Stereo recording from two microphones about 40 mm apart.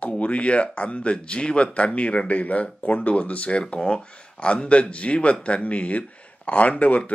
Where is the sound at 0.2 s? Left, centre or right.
Left.